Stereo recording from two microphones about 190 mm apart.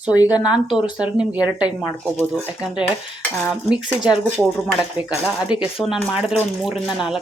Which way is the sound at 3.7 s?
5° right (ahead or behind).